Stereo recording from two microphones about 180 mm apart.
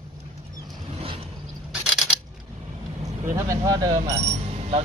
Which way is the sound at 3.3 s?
20° right (ahead or behind).